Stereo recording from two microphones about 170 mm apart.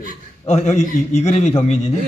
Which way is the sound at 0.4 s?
40° left (ahead or behind).